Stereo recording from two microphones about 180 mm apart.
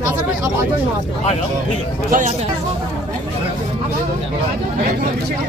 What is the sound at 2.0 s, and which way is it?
Speech, 45° right (ahead or behind).